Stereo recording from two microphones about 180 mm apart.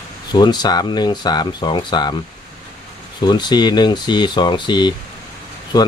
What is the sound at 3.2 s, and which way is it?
Speech, 25° left (ahead or behind).